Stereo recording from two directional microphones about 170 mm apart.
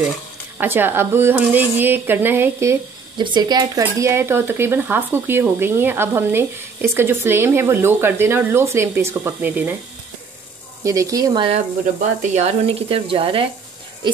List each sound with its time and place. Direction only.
0.6 s speech: 10° right (ahead or behind)
3.2 s speech: 25° right (ahead or behind); by 9.8 s 10° right (ahead or behind)
10.8 s speech: 20° right (ahead or behind)
12.4 s speech: 40° right (ahead or behind)